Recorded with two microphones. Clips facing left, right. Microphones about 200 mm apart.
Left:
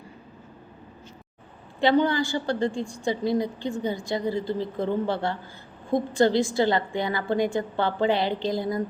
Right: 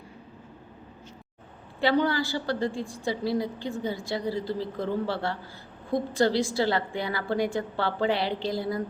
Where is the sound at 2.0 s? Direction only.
5° right (ahead or behind).